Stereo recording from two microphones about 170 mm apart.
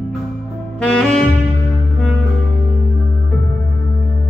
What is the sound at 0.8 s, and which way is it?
Saxophone, 5° left (ahead or behind).